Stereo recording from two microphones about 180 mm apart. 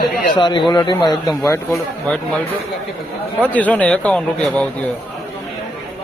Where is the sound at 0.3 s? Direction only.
25° left (ahead or behind).